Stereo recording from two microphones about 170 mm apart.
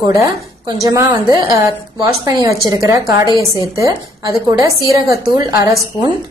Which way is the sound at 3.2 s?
20° left (ahead or behind).